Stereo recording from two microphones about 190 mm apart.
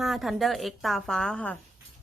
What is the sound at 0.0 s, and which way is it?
A woman's voice, centre (ahead or behind).